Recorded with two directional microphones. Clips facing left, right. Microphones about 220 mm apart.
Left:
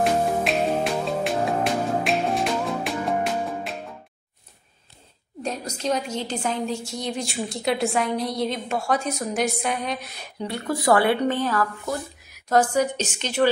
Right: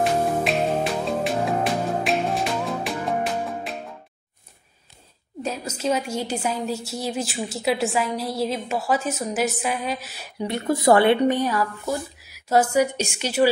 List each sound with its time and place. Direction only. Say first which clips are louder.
0.0 s music: even; centre (ahead or behind)
5.4 s a woman's voice: right 1 dB; 5° right (ahead or behind)
10.5 s a woman's voice: right 3 dB; 25° right (ahead or behind)